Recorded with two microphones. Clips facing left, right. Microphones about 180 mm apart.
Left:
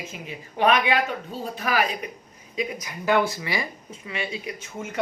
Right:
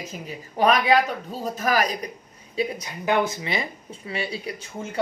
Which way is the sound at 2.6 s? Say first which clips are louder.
Right 3 dB; 30° right (ahead or behind).